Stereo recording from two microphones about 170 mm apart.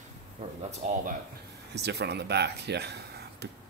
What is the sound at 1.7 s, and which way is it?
Speech, 75° right (ahead or behind).